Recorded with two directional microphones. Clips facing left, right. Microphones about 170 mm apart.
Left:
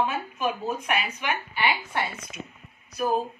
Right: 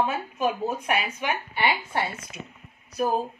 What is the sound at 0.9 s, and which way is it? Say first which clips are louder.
Speech: right 1 dB; 40° right (ahead or behind).